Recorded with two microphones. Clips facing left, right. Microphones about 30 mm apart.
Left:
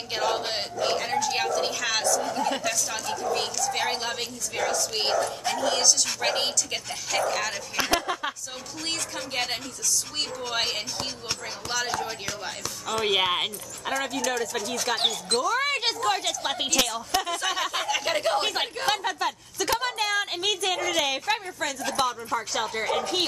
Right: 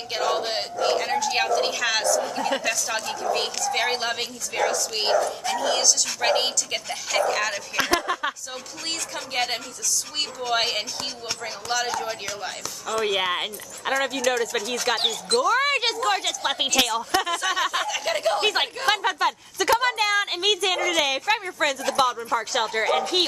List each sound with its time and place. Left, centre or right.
0.1 s a sound: centre
2.3 s a woman's voice: centre
5.2 s a woman's voice: centre
6.2 s a woman's voice: centre
12.8 s speech: centre
13.9 s speech: centre
17.4 s a woman's voice: centre
18.8 s speech: centre
21.5 s speech: right
21.8 s speech: centre